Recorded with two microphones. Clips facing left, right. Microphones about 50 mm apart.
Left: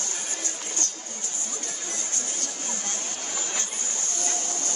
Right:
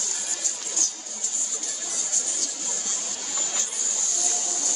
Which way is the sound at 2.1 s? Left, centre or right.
Left.